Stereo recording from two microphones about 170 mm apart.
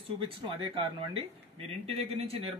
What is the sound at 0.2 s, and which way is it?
Speech, 30° right (ahead or behind).